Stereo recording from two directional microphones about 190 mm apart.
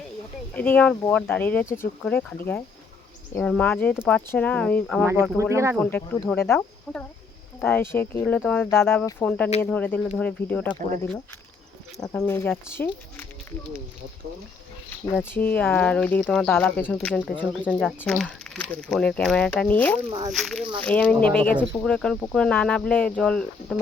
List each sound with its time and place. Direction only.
0.5 s speech: 10° left (ahead or behind)
5.4 s speech: 15° right (ahead or behind)
5.8 s speech: 10° left (ahead or behind)
11.9 s speech: 15° left (ahead or behind)
15.4 s speech: 10° left (ahead or behind)
20.1 s speech: 20° right (ahead or behind)
20.3 s speech: centre (ahead or behind)